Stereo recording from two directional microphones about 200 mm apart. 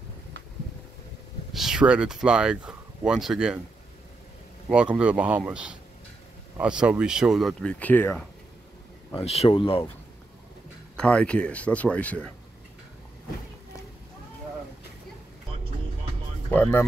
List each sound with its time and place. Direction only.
1.5 s speech: centre (ahead or behind)
4.6 s speech: 5° right (ahead or behind)
9.2 s speech: 30° left (ahead or behind)
11.0 s speech: 5° left (ahead or behind)
16.4 s speech: 10° left (ahead or behind)